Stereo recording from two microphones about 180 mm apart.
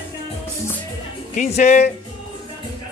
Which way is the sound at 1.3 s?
40° left (ahead or behind).